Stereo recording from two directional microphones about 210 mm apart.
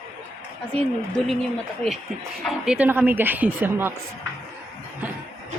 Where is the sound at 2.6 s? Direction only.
5° right (ahead or behind).